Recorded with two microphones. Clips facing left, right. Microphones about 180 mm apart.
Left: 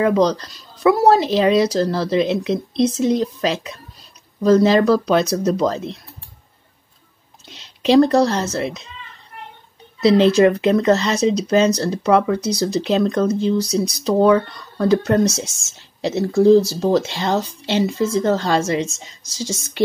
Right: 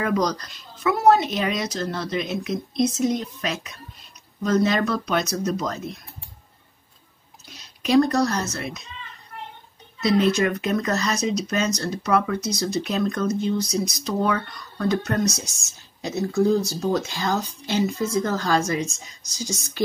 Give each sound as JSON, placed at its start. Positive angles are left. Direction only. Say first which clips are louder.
{"t": 0.0, "sound": "speech", "louder": "left 7 dB", "side_deg": 30}
{"t": 7.4, "sound": "speech", "louder": "left 8 dB", "side_deg": 25}
{"t": 10.3, "sound": "speech", "louder": "left 9 dB", "side_deg": 30}